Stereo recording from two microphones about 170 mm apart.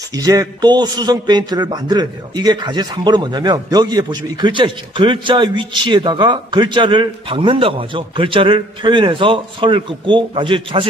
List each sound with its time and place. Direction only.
0.1 s a man's voice: 20° right (ahead or behind)